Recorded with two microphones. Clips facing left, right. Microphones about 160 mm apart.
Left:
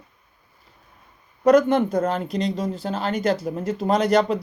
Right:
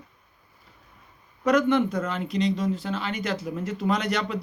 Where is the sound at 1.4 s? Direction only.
35° left (ahead or behind).